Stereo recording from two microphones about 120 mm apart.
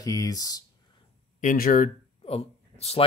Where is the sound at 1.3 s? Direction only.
90° left.